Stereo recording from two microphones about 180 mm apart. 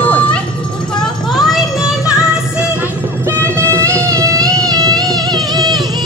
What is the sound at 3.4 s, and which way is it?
Music, 15° right (ahead or behind).